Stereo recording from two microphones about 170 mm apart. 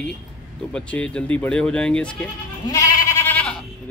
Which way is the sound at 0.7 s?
5° left (ahead or behind).